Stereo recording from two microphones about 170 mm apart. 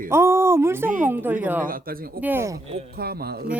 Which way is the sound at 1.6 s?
55° right (ahead or behind).